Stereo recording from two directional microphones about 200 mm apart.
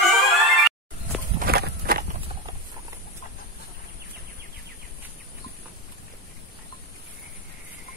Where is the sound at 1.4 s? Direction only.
50° right (ahead or behind).